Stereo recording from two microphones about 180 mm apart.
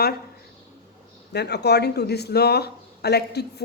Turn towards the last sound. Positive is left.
turn(degrees=65)  # may be behind; listen again after turning